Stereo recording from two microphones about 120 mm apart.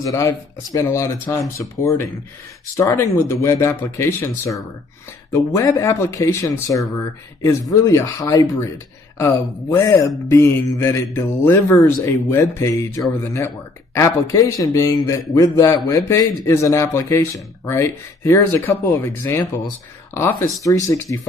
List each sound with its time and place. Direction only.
0.0 s a man's voice: 25° left (ahead or behind)